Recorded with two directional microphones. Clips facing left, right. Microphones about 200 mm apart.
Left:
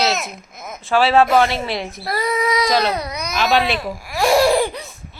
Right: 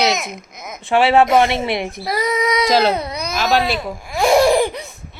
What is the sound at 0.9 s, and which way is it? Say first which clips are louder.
A child's voice: right 1 dB; 20° right (ahead or behind).